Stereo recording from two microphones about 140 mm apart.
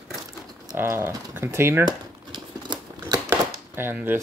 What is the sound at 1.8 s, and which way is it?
Crumpling, 30° right (ahead or behind).